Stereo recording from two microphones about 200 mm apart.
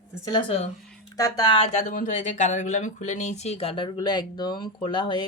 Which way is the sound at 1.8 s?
40° left (ahead or behind).